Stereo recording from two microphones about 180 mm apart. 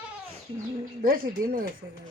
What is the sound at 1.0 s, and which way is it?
Speech, 50° right (ahead or behind).